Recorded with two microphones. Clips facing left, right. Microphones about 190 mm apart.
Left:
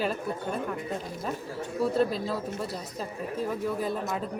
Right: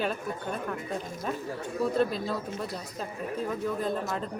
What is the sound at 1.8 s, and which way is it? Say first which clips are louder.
Speech: left 1 dB; centre (ahead or behind).